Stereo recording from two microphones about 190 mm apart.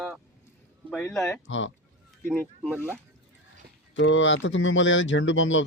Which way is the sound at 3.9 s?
80° left.